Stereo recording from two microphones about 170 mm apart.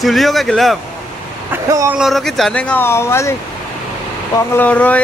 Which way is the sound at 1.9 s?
Centre (ahead or behind).